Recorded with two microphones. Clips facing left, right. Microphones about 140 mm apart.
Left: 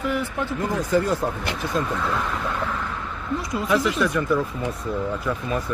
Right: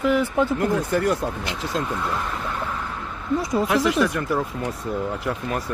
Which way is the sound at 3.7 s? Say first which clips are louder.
Left 2 dB; 65° right (ahead or behind).